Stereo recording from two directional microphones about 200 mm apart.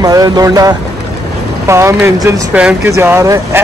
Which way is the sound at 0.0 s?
20° right (ahead or behind).